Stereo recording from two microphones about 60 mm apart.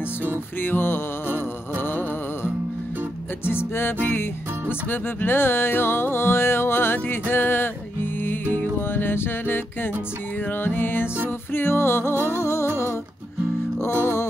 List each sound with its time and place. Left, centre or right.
0.6 s music: left